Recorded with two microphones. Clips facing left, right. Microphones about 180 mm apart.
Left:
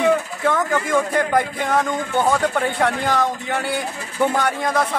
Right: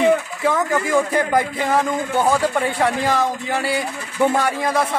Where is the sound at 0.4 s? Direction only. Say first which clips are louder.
Right 1 dB; 5° right (ahead or behind).